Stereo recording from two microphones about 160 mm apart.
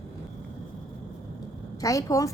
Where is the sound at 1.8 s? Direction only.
20° left (ahead or behind).